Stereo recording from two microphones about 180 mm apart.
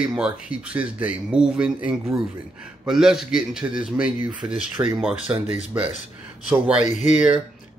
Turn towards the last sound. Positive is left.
turn(degrees=40)  # may be behind; listen again after turning